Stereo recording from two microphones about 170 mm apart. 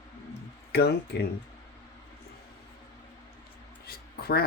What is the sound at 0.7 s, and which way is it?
Speech, 70° left (ahead or behind).